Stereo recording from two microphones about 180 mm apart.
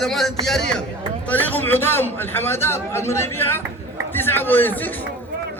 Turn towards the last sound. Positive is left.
turn(degrees=10)  # may be behind; listen again after turning